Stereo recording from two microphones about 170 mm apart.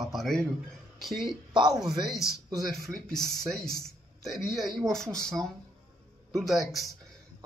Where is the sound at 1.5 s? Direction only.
25° right (ahead or behind).